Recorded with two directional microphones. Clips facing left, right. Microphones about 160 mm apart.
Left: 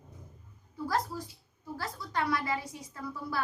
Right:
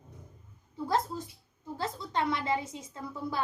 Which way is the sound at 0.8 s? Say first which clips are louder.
Right 2 dB; 25° right (ahead or behind).